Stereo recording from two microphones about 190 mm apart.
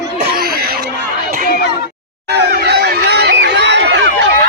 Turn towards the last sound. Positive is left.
turn(degrees=-65)  # may be behind; listen again after turning